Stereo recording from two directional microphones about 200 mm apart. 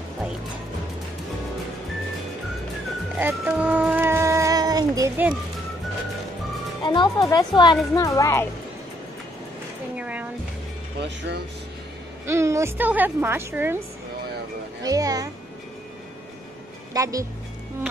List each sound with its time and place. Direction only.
3.2 s music: 10° right (ahead or behind)
6.8 s speech: 20° left (ahead or behind)
9.9 s music: 5° right (ahead or behind)
11.0 s speech: 60° right (ahead or behind)
12.3 s a woman's voice: 15° right (ahead or behind)
14.8 s a woman's voice: 20° right (ahead or behind)
16.9 s a woman's voice: 15° right (ahead or behind)